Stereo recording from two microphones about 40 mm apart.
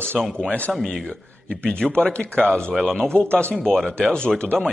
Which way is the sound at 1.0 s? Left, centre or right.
Centre.